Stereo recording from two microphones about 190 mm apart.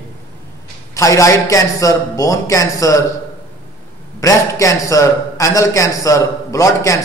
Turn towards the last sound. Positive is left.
turn(degrees=15)  # may be behind; listen again after turning